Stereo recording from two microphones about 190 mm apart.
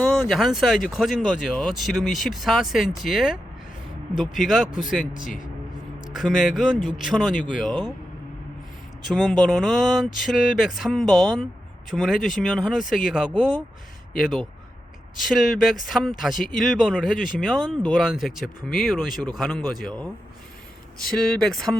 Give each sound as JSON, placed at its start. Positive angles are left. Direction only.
{"t": 0.0, "sound": "speech", "side_deg": 0}
{"t": 4.4, "sound": "speech", "side_deg": 0}
{"t": 5.2, "sound": "speech", "side_deg": 45}
{"t": 6.1, "sound": "speech", "side_deg": 0}
{"t": 9.0, "sound": "speech", "side_deg": 0}
{"t": 15.3, "sound": "speech", "side_deg": 0}
{"t": 17.2, "sound": "speech", "side_deg": 45}
{"t": 17.4, "sound": "speech", "side_deg": 0}